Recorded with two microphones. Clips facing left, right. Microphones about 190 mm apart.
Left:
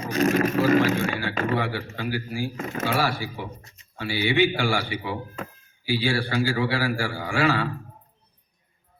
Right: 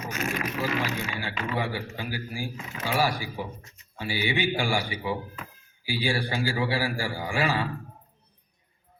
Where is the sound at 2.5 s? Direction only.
45° left (ahead or behind).